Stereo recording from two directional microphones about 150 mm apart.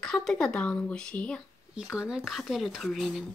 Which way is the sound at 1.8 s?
5° right (ahead or behind).